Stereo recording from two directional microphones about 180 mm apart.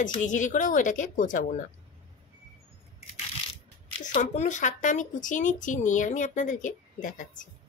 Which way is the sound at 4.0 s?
45° left (ahead or behind).